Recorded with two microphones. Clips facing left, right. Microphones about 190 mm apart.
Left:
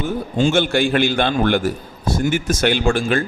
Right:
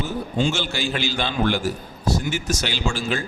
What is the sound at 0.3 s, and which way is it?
A man's voice, 50° left (ahead or behind).